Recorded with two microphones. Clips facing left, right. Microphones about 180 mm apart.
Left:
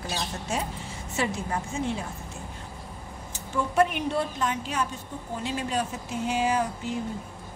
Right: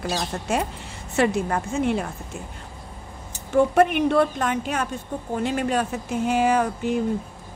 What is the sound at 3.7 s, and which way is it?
Speech, 60° right (ahead or behind).